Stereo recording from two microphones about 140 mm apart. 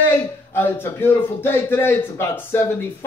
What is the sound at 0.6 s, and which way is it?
A man's voice, 15° left (ahead or behind).